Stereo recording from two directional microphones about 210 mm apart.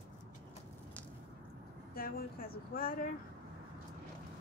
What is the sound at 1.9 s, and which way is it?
Speech, 45° left (ahead or behind).